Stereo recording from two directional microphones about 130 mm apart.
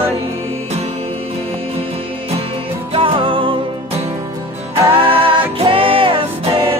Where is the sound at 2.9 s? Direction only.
45° right (ahead or behind).